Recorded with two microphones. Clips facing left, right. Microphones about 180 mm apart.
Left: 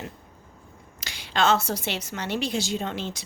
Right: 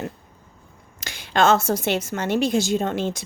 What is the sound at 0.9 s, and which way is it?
A woman's voice, 50° right (ahead or behind).